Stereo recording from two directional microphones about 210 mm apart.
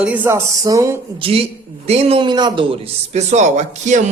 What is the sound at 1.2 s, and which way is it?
A man's voice, 30° right (ahead or behind).